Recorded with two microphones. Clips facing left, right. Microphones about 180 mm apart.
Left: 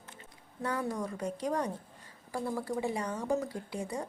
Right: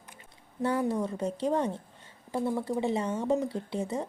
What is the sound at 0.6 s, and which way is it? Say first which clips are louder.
A woman's voice: right 6 dB; 25° right (ahead or behind).